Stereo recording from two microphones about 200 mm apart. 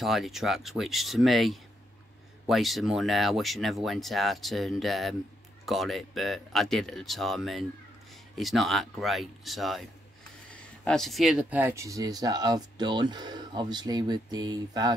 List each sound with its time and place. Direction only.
0.0 s speech: centre (ahead or behind); by 15.0 s 20° right (ahead or behind)